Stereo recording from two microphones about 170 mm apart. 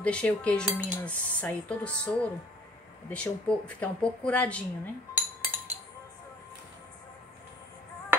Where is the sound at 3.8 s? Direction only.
5° left (ahead or behind).